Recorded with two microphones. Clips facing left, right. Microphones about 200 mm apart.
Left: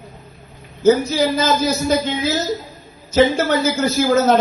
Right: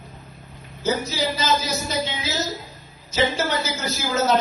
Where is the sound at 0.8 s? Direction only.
50° left (ahead or behind).